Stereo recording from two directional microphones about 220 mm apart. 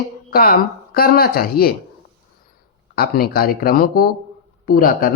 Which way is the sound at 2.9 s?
45° left (ahead or behind).